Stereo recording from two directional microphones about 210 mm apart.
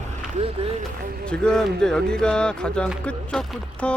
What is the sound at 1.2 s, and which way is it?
Speech, 5° left (ahead or behind).